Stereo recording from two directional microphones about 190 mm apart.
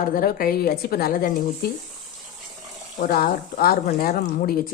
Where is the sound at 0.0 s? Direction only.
50° left (ahead or behind).